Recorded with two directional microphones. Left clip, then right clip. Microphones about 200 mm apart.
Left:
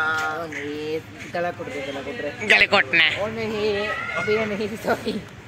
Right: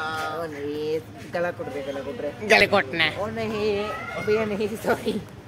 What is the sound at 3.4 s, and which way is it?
Speech, 30° right (ahead or behind).